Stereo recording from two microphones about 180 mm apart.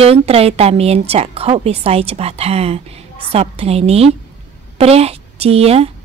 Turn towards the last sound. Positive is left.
turn(degrees=-35)  # may be behind; listen again after turning